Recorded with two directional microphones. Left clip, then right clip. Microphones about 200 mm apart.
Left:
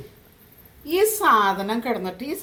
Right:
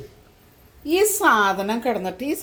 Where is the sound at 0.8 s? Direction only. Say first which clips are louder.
Right 1 dB; 50° right (ahead or behind).